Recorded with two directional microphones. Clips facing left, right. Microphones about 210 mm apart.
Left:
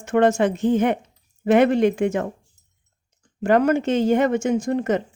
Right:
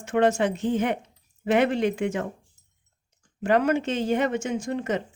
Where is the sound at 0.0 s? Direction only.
45° left (ahead or behind).